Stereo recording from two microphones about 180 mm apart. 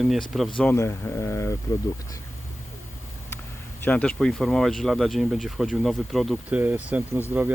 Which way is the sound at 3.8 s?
5° left (ahead or behind).